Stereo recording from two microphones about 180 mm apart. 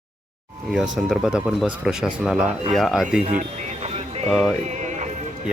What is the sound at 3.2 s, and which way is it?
Music, 40° right (ahead or behind).